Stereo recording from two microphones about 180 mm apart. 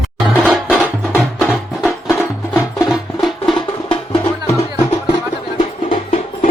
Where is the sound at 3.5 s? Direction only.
30° left (ahead or behind).